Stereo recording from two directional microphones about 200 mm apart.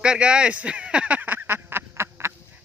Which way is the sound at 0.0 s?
5° right (ahead or behind).